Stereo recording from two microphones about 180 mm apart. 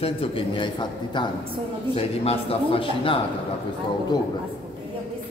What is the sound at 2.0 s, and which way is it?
A man's voice, 30° left (ahead or behind).